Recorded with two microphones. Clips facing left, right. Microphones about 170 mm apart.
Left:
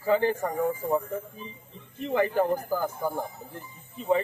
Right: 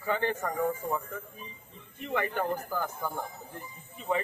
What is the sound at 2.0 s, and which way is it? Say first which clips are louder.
Speech: left 6 dB; 30° left (ahead or behind).